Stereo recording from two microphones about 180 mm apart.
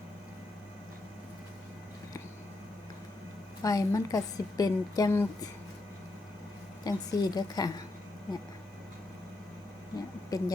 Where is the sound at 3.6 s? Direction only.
20° left (ahead or behind).